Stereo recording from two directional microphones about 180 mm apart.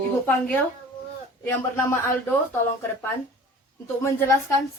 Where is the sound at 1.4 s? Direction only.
10° left (ahead or behind).